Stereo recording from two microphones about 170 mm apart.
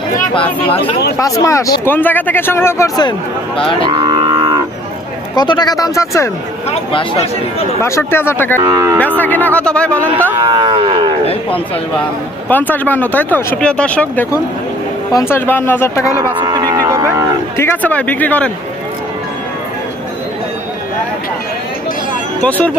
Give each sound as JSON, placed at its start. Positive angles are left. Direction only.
{"t": 0.7, "sound": "speech", "side_deg": 35}
{"t": 1.2, "sound": "speech", "side_deg": 20}
{"t": 3.8, "sound": "livestock", "side_deg": -25}
{"t": 5.3, "sound": "speech", "side_deg": 25}
{"t": 6.7, "sound": "speech", "side_deg": 35}
{"t": 7.8, "sound": "speech", "side_deg": 15}
{"t": 8.5, "sound": "speech", "side_deg": -20}
{"t": 9.1, "sound": "speech", "side_deg": 10}
{"t": 10.0, "sound": "speech", "side_deg": -10}
{"t": 10.4, "sound": "speech", "side_deg": -25}
{"t": 12.5, "sound": "speech", "side_deg": 10}
{"t": 16.4, "sound": "a sound", "side_deg": -25}
{"t": 17.6, "sound": "speech", "side_deg": 10}
{"t": 22.4, "sound": "speech", "side_deg": 10}